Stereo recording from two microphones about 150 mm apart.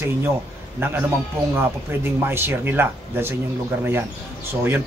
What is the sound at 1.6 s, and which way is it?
A man's voice, 15° right (ahead or behind).